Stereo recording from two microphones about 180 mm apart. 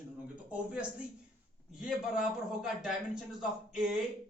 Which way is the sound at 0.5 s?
5° right (ahead or behind).